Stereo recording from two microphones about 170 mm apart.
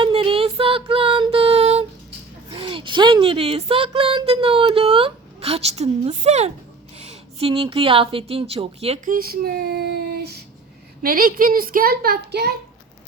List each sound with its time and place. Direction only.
0.0 s a sound: 30° right (ahead or behind)
2.5 s a woman's voice: 30° right (ahead or behind)
9.0 s child singing: 60° right (ahead or behind)
11.0 s a child's voice: 55° right (ahead or behind)